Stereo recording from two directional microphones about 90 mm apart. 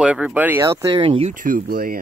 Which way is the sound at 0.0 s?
15° right (ahead or behind).